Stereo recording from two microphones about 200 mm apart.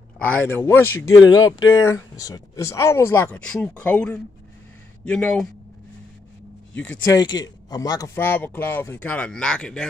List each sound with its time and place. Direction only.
0.2 s speech: 10° left (ahead or behind)
6.7 s speech: 5° left (ahead or behind)
7.7 s speech: 20° left (ahead or behind); by 9.8 s 5° left (ahead or behind)